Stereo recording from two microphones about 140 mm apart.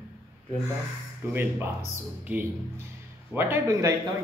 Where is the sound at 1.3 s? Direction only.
15° right (ahead or behind).